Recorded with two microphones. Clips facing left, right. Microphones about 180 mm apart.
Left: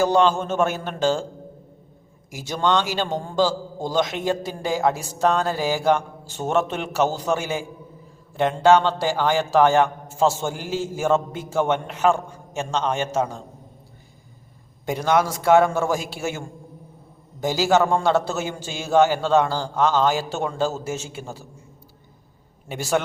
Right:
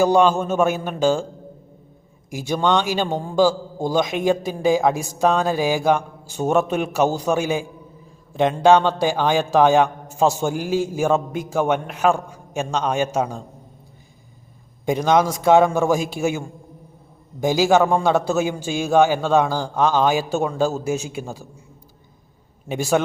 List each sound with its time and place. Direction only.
0.0 s a man's voice: 10° right (ahead or behind)
2.3 s a man's voice: 15° right (ahead or behind)
14.8 s a man's voice: 15° right (ahead or behind)
17.4 s a man's voice: 15° right (ahead or behind)
22.7 s a man's voice: 15° right (ahead or behind)